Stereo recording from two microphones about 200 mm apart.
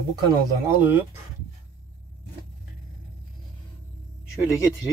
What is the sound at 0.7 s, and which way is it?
Speech, 10° right (ahead or behind).